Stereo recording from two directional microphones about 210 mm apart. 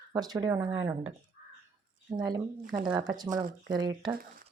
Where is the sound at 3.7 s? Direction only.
20° right (ahead or behind).